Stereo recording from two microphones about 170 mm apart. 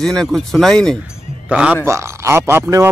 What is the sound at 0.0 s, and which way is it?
A man's voice, 5° left (ahead or behind).